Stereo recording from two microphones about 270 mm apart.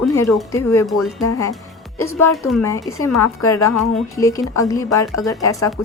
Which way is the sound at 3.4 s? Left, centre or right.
Centre.